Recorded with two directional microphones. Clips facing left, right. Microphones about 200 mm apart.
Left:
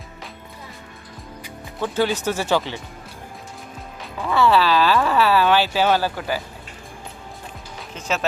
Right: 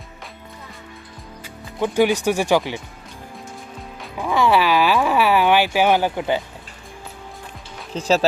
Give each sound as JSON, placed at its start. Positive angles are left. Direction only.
{"t": 1.8, "sound": "speech", "side_deg": -15}
{"t": 4.2, "sound": "speech", "side_deg": -15}
{"t": 7.9, "sound": "speech", "side_deg": -35}